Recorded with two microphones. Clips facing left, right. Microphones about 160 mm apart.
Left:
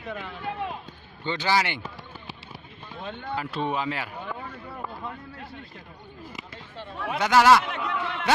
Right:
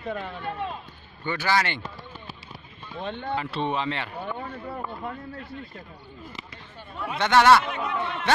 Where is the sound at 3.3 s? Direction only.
5° left (ahead or behind).